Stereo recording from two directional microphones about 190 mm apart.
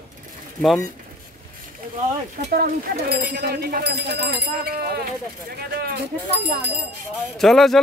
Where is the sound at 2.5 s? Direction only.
50° right (ahead or behind).